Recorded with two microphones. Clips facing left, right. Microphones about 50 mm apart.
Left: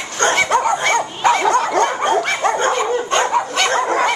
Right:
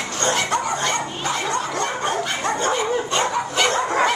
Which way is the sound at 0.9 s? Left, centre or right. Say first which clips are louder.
Left 8 dB; left.